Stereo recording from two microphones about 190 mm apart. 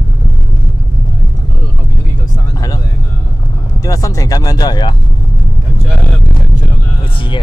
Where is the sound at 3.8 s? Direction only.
20° left (ahead or behind).